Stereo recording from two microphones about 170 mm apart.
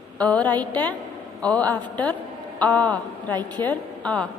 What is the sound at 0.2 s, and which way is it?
A woman's voice, 10° left (ahead or behind).